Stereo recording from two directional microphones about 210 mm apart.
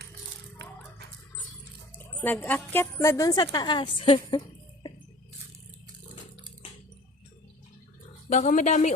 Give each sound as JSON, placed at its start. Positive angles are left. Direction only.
{"t": 2.2, "sound": "a woman's voice", "side_deg": 10}
{"t": 8.3, "sound": "speech", "side_deg": 35}